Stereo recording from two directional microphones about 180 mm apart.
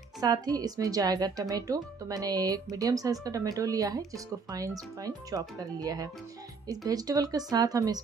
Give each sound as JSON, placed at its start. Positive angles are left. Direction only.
{"t": 0.2, "sound": "speech", "side_deg": -20}